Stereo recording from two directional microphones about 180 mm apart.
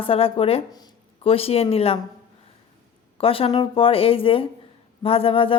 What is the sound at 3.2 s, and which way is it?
Speech, 30° left (ahead or behind).